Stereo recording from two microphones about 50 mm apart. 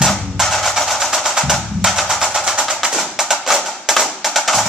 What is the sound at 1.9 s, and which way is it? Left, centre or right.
Percussion, centre.